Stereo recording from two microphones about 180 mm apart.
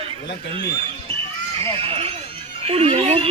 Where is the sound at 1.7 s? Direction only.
30° right (ahead or behind).